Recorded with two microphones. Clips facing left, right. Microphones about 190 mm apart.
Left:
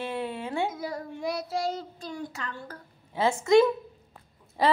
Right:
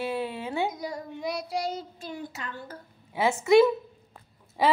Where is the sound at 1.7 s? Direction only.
20° right (ahead or behind).